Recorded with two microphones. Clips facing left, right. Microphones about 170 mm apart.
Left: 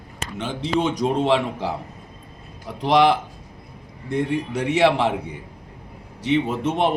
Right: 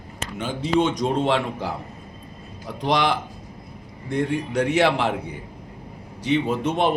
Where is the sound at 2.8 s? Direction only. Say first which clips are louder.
Left 5 dB; 5° left (ahead or behind).